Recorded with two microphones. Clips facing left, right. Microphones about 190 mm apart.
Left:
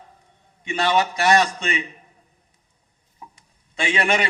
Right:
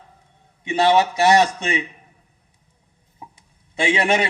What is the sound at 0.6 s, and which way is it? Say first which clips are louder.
A man's voice: right 4 dB; 20° right (ahead or behind).